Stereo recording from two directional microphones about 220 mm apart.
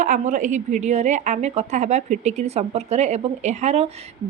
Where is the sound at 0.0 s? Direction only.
35° right (ahead or behind).